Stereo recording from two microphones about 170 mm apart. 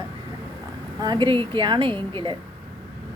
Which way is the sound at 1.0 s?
25° right (ahead or behind).